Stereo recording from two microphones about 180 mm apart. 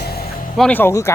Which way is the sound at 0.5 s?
5° left (ahead or behind).